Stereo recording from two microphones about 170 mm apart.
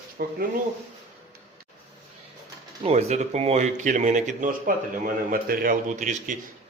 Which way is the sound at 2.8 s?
40° right (ahead or behind).